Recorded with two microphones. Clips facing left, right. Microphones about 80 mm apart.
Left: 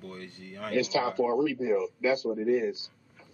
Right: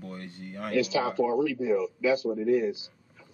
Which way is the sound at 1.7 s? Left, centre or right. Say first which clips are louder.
Right 1 dB; left.